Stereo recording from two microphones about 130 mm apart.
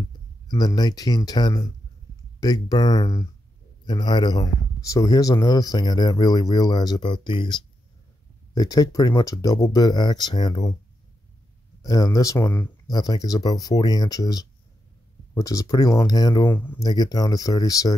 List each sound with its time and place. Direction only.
0.5 s a man's voice: 30° left (ahead or behind)
11.8 s speech: 30° left (ahead or behind)
12.8 s speech: 30° left (ahead or behind)
16.4 s speech: 15° left (ahead or behind)
16.8 s speech: 30° left (ahead or behind)